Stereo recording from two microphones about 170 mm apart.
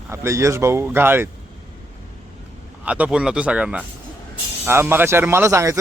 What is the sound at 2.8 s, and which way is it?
Speech, 10° right (ahead or behind).